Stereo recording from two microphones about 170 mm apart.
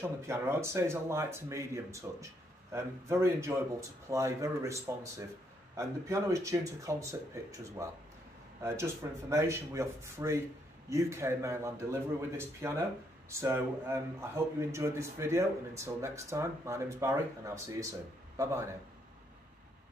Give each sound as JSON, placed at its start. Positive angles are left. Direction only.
{"t": 0.0, "sound": "a man's voice", "side_deg": -15}